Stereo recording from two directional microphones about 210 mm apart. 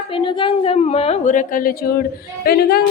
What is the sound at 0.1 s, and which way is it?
A woman's voice, 25° left (ahead or behind).